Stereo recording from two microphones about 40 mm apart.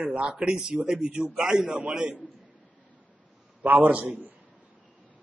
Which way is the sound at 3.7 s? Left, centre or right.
Right.